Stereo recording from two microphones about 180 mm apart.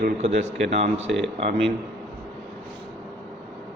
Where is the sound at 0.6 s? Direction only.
40° right (ahead or behind).